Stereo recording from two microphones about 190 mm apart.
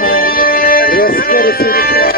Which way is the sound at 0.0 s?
50° left (ahead or behind).